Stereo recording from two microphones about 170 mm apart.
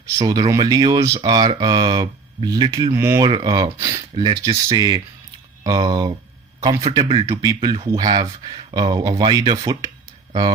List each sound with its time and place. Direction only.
0.0 s speech: 20° right (ahead or behind)
3.2 s speech: 25° right (ahead or behind)